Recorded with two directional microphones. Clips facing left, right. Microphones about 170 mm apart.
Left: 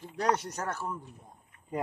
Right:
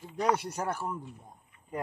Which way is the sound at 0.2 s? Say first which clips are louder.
Right 1 dB; 10° right (ahead or behind).